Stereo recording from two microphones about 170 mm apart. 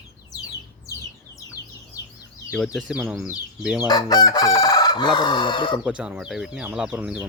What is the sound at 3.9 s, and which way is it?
Chicken, 25° left (ahead or behind).